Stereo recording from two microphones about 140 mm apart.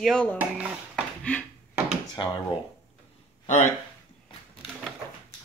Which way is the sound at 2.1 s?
35° left (ahead or behind).